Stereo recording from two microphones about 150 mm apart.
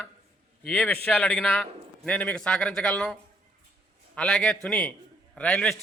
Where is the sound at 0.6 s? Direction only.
10° left (ahead or behind).